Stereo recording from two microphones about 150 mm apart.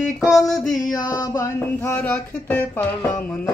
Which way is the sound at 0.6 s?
60° left (ahead or behind).